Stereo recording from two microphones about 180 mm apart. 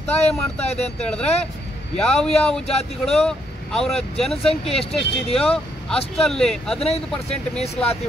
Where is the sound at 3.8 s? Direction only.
35° left (ahead or behind).